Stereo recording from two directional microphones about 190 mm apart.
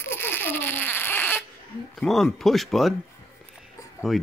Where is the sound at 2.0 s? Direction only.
Centre (ahead or behind).